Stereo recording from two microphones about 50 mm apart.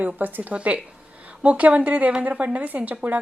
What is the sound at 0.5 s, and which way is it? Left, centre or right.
A woman's voice, right.